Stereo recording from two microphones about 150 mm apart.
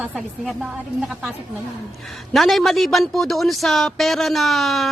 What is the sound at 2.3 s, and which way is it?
Speech, centre (ahead or behind).